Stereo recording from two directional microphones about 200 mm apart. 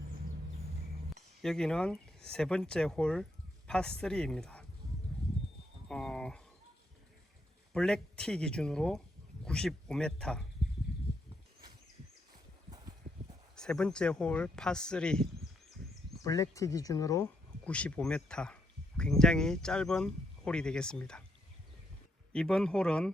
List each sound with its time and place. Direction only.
1.1 s speech: centre (ahead or behind)
5.9 s a sound: 5° left (ahead or behind)
7.7 s speech: 5° left (ahead or behind)
13.6 s speech: 5° left (ahead or behind)
16.1 s speech: 15° left (ahead or behind)
22.3 s speech: 5° left (ahead or behind)